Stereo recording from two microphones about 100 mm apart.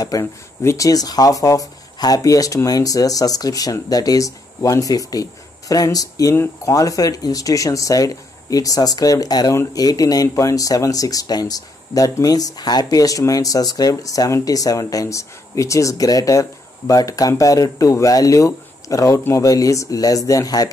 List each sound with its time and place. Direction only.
0.0 s speech: 35° left (ahead or behind)
6.3 s speech: 25° left (ahead or behind)
6.7 s speech: 35° left (ahead or behind)